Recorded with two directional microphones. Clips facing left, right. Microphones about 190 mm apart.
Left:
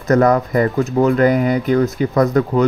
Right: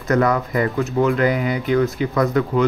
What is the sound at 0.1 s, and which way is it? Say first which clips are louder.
Speech: left 5 dB; 40° left (ahead or behind).